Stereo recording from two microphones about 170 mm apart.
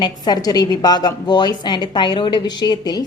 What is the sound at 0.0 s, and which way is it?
A woman's voice, 25° left (ahead or behind).